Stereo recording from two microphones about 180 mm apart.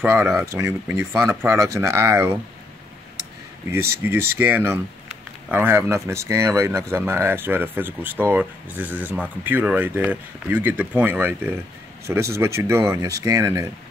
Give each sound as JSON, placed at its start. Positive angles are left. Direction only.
{"t": 0.0, "sound": "speech", "side_deg": -15}
{"t": 4.0, "sound": "speech", "side_deg": -10}